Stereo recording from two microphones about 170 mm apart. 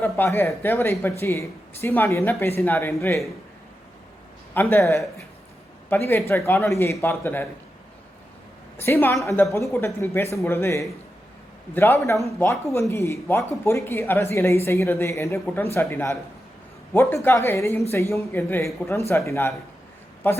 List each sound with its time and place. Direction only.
0.0 s a woman's voice: 10° left (ahead or behind)
4.5 s a woman's voice: 15° left (ahead or behind)
6.1 s a woman's voice: 15° left (ahead or behind)
8.8 s a woman's voice: 15° left (ahead or behind)